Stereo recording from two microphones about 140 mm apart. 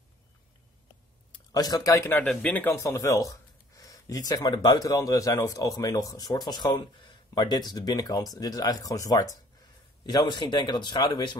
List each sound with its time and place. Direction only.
1.5 s speech: 25° left (ahead or behind)